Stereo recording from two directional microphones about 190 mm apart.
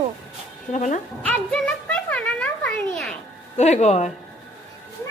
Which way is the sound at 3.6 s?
35° left (ahead or behind).